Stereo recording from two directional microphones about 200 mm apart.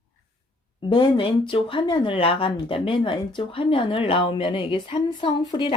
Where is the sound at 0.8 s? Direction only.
25° left (ahead or behind).